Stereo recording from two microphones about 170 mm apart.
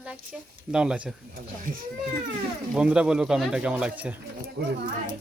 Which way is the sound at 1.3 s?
50° right (ahead or behind).